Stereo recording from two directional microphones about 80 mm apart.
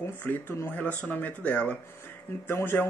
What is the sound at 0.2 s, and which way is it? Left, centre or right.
Speech, left.